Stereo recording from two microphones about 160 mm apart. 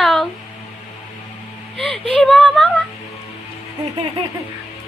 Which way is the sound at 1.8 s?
5° left (ahead or behind).